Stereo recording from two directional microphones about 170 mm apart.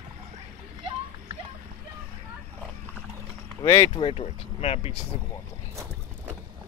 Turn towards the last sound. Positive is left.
turn(degrees=35)  # may be behind; listen again after turning